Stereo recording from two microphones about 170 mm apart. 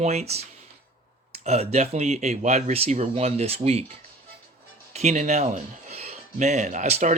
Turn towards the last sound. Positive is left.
turn(degrees=-40)  # may be behind; listen again after turning